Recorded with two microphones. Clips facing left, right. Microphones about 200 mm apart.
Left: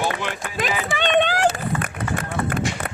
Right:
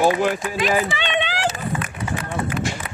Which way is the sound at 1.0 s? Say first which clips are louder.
Left 5 dB; 50° left (ahead or behind).